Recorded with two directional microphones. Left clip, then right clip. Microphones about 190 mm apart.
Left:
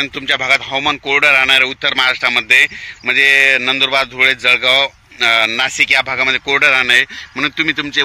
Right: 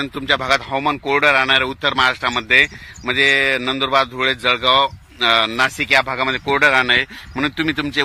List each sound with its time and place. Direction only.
0.0 s speech: 40° right (ahead or behind); by 8.0 s 60° right (ahead or behind)